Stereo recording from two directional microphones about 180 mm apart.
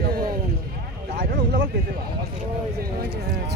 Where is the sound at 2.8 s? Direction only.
55° right (ahead or behind).